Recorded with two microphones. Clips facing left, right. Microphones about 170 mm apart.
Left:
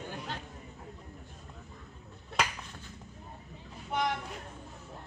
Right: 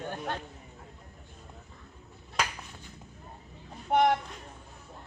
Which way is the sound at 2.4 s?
Centre (ahead or behind).